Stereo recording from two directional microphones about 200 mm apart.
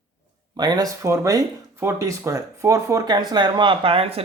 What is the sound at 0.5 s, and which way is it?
Speech, 20° right (ahead or behind).